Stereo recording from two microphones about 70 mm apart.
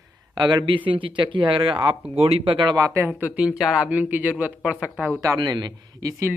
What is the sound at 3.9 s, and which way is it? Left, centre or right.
Speech, right.